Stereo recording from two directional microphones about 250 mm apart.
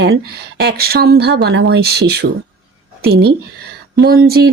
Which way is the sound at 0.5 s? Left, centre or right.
Right.